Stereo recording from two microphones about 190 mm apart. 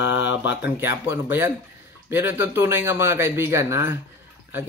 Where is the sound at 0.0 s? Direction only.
75° left (ahead or behind).